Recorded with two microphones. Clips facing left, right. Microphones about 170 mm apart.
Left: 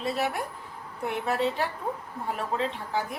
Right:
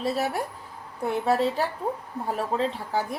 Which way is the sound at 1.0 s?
40° right (ahead or behind).